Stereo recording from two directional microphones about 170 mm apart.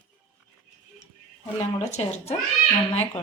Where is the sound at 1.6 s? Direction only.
40° left (ahead or behind).